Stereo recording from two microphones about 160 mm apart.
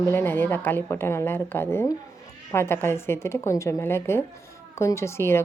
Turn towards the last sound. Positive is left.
turn(degrees=15)  # may be behind; listen again after turning